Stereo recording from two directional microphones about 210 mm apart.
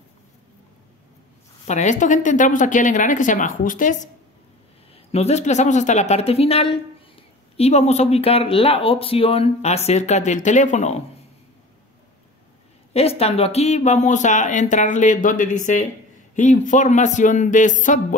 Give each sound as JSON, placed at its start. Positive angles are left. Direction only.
{"t": 1.7, "sound": "a woman's voice", "side_deg": 35}
{"t": 12.9, "sound": "a woman's voice", "side_deg": 30}